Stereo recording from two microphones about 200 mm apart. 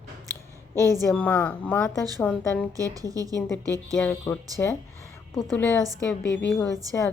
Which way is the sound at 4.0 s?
10° left (ahead or behind).